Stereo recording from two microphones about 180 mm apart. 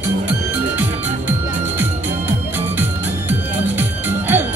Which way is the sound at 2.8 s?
10° right (ahead or behind).